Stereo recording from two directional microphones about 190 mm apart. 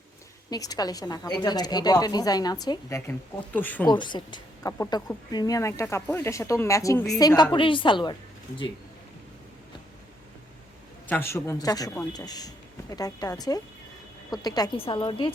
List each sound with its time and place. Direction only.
0.5 s a woman's voice: 20° left (ahead or behind)
3.8 s a woman's voice: 25° left (ahead or behind)
11.1 s a woman's voice: 15° left (ahead or behind)